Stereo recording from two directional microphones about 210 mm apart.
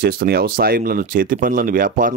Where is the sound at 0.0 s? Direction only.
45° right (ahead or behind).